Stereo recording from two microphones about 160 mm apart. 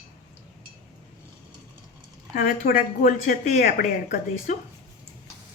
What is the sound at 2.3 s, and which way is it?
Speech, 60° left (ahead or behind).